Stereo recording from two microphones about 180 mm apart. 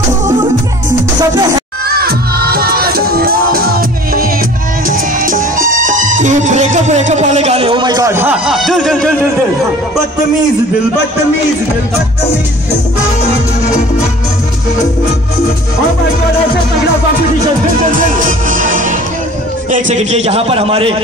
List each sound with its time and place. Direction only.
1.9 s music: 60° right (ahead or behind); by 8.4 s 15° right (ahead or behind)
8.5 s a sound: centre (ahead or behind)
18.5 s music: 45° right (ahead or behind)
19.7 s a man's voice: 40° right (ahead or behind)